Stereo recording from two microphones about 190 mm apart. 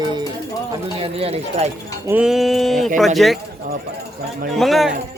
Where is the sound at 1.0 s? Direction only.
30° right (ahead or behind).